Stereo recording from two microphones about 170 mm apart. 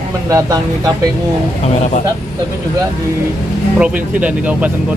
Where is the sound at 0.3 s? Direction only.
20° right (ahead or behind).